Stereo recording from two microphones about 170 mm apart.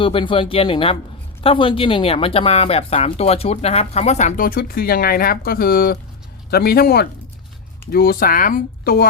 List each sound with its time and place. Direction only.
0.0 s speech: 30° left (ahead or behind); by 9.0 s 60° left (ahead or behind)